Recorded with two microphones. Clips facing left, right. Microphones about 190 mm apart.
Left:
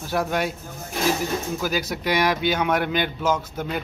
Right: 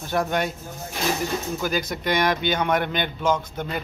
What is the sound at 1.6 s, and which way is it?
A man's voice, 5° left (ahead or behind).